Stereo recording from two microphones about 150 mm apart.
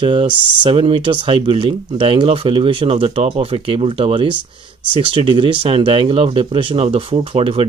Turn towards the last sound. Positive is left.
turn(degrees=-40)  # may be behind; listen again after turning